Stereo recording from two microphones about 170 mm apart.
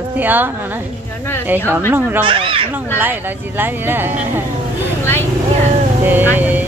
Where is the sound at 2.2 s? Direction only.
30° right (ahead or behind).